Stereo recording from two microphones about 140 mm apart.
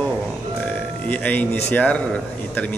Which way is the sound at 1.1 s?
10° left (ahead or behind).